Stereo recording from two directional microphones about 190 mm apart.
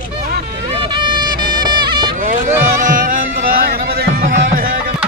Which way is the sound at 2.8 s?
45° right (ahead or behind).